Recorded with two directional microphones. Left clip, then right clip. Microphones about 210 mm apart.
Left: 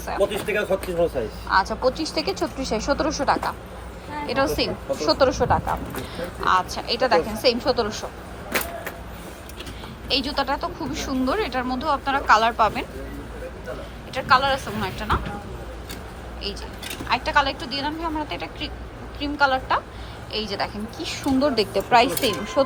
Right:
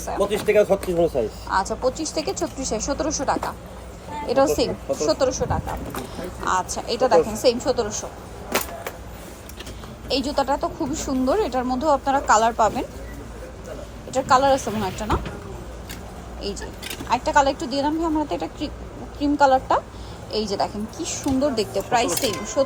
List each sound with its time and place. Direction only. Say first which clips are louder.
0.5 s speech: right 5 dB; 35° right (ahead or behind)
1.5 s a woman's voice: left 5 dB; 15° right (ahead or behind)
4.9 s speech: left 2 dB; 10° right (ahead or behind)
6.1 s speech: left 3 dB; 15° right (ahead or behind)
10.1 s a woman's voice: right 1 dB; 20° right (ahead or behind)
14.1 s a woman's voice: right 2 dB; 25° right (ahead or behind)
17.1 s a woman's voice: right 2 dB; 25° right (ahead or behind); by 22.6 s 5° right (ahead or behind)